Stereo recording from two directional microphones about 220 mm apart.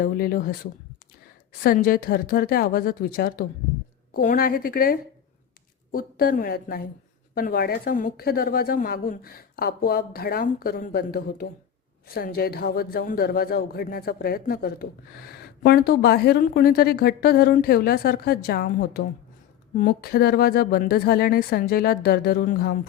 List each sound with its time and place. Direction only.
0.0 s a woman's voice: 40° left (ahead or behind)